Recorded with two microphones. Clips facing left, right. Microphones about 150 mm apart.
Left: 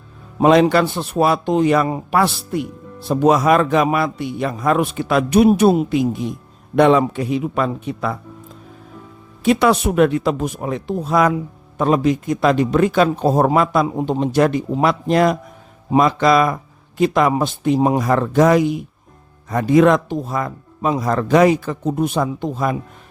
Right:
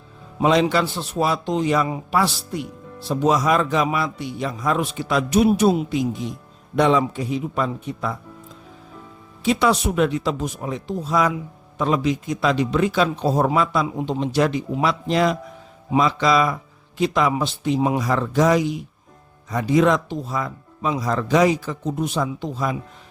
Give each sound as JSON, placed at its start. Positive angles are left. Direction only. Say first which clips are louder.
{"t": 0.3, "sound": "a man's voice", "louder": "left 5 dB", "side_deg": 55}
{"t": 9.4, "sound": "a man's voice", "louder": "left 4 dB", "side_deg": 55}